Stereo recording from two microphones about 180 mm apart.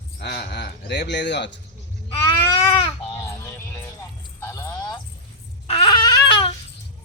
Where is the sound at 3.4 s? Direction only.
10° left (ahead or behind).